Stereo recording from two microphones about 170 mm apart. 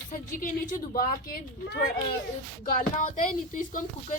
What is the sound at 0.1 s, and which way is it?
A woman's voice, 50° left (ahead or behind).